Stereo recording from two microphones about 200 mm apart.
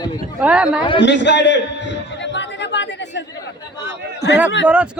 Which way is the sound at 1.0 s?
60° left (ahead or behind).